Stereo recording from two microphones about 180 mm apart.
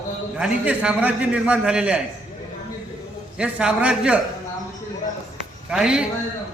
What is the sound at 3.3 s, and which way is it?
Speech, 5° right (ahead or behind).